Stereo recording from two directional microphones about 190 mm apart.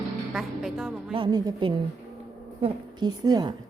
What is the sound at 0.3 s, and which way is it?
Speech, centre (ahead or behind).